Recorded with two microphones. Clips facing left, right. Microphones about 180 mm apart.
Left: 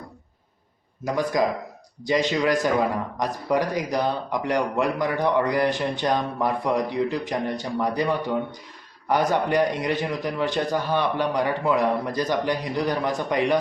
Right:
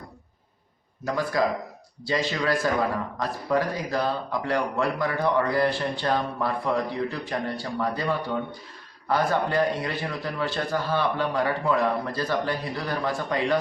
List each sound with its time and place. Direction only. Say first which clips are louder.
1.0 s speech: left 2 dB; 15° left (ahead or behind)